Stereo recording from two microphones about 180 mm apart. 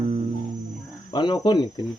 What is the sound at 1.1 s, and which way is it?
Speech, 25° left (ahead or behind).